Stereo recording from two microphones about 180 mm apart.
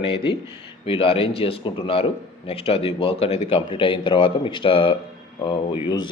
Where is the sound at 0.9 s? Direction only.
30° left (ahead or behind).